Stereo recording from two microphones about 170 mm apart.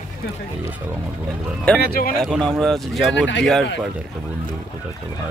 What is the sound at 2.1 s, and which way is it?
Speech, centre (ahead or behind).